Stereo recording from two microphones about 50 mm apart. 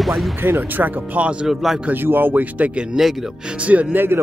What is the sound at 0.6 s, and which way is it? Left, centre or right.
Speech, right.